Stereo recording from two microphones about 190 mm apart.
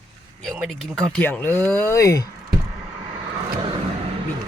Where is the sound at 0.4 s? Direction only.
Centre (ahead or behind); by 2.2 s 15° left (ahead or behind).